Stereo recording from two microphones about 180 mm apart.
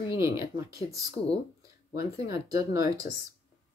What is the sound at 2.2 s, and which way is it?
Speech, 20° right (ahead or behind).